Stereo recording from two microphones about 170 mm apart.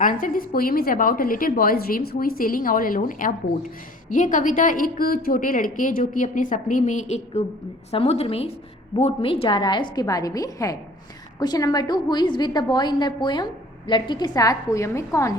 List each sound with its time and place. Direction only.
0.0 s a woman's voice: 50° left (ahead or behind); by 15.4 s 20° left (ahead or behind)